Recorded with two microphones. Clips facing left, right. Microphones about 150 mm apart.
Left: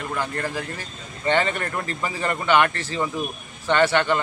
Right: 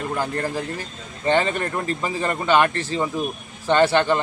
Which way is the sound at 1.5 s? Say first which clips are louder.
Right 3 dB; 20° right (ahead or behind).